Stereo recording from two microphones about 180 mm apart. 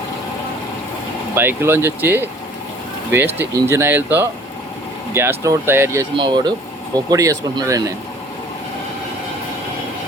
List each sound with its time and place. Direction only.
1.4 s speech: 10° right (ahead or behind)
3.3 s speech: 15° right (ahead or behind)
6.1 s speech: 25° right (ahead or behind)